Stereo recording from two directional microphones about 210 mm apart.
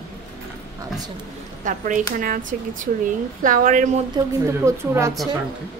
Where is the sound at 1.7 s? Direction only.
35° right (ahead or behind).